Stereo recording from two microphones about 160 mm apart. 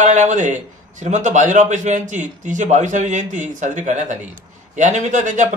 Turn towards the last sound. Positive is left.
turn(degrees=-50)  # may be behind; listen again after turning